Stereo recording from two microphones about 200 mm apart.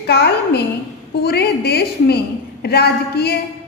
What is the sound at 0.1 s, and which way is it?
A woman's voice, 55° left (ahead or behind).